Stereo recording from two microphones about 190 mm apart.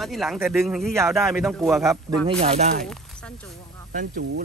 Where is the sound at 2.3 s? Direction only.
30° right (ahead or behind).